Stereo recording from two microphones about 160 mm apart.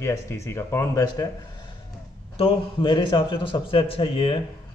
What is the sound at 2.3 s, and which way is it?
A man's voice, 35° left (ahead or behind).